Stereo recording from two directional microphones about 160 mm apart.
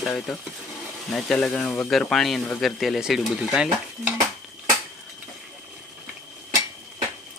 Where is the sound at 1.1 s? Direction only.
Centre (ahead or behind).